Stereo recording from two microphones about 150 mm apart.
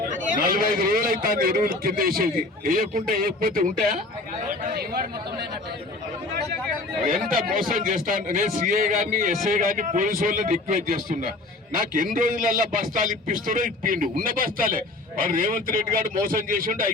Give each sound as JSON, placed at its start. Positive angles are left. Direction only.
{"t": 0.1, "sound": "a man's voice", "side_deg": -70}
{"t": 4.7, "sound": "chatter", "side_deg": -90}
{"t": 7.1, "sound": "a man's voice", "side_deg": -70}